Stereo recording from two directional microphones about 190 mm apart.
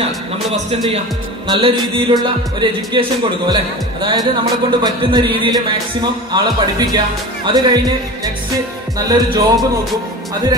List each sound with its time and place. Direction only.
1.5 s a man's voice: 25° right (ahead or behind)